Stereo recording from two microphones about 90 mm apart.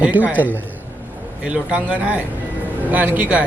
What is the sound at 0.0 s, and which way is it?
Speech, 15° right (ahead or behind).